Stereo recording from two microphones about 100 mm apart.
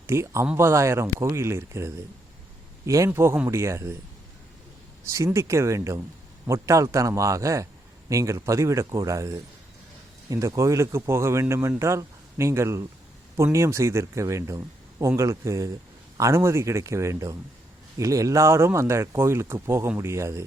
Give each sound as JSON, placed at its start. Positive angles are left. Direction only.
{"t": 0.1, "sound": "speech", "side_deg": -30}
{"t": 5.1, "sound": "speech", "side_deg": -30}